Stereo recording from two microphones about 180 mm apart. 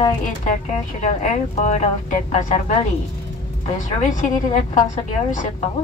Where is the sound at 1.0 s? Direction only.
40° left (ahead or behind).